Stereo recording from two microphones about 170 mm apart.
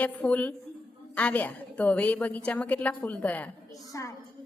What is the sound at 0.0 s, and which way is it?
A woman's voice, 10° left (ahead or behind).